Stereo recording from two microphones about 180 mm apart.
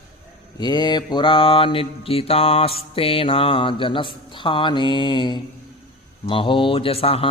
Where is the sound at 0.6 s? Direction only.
25° left (ahead or behind).